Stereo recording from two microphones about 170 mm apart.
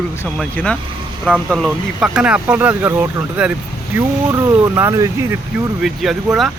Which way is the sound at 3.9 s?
20° right (ahead or behind).